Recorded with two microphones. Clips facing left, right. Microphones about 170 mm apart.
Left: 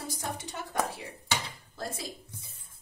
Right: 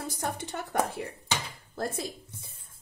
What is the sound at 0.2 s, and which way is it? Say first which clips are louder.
Music: right 4 dB; 55° right (ahead or behind).